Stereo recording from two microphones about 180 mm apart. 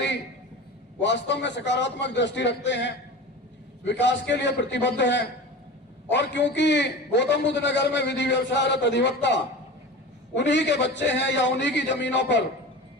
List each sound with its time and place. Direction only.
1.0 s a man's voice: 80° left
4.0 s a man's voice: 75° left (ahead or behind)